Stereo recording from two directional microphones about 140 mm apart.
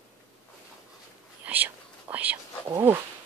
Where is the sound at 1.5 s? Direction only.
10° right (ahead or behind).